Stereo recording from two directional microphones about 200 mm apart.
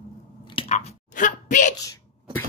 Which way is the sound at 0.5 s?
30° left (ahead or behind).